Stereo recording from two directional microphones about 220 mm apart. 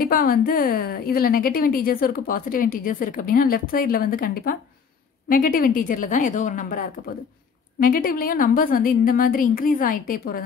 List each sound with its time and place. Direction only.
0.0 s a woman's voice: 40° left (ahead or behind)